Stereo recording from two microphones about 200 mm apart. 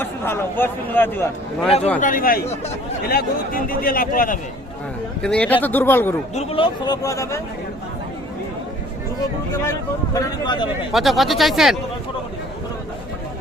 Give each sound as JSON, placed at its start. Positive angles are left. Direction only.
{"t": 0.0, "sound": "speech", "side_deg": 10}
{"t": 1.6, "sound": "speech", "side_deg": 30}
{"t": 2.0, "sound": "speech", "side_deg": 40}
{"t": 5.2, "sound": "speech", "side_deg": 5}
{"t": 6.3, "sound": "speech", "side_deg": 30}
{"t": 10.2, "sound": "speech", "side_deg": 20}
{"t": 10.9, "sound": "speech", "side_deg": 0}